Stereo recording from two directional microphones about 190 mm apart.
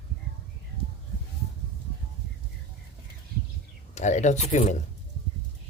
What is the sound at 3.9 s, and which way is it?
Speech, 40° left (ahead or behind).